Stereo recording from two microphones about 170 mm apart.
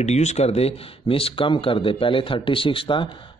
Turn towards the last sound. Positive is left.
turn(degrees=30)  # may be behind; listen again after turning